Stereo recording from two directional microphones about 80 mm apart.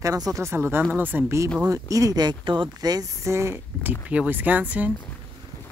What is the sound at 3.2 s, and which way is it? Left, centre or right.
Speech, right.